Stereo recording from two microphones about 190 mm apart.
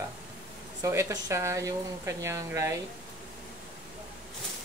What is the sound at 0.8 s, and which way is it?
Speech, 15° right (ahead or behind).